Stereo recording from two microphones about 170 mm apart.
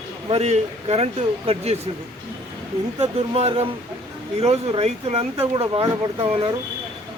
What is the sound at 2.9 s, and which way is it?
Speech, 35° right (ahead or behind).